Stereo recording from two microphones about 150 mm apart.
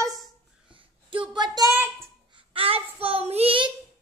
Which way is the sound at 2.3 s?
40° right (ahead or behind).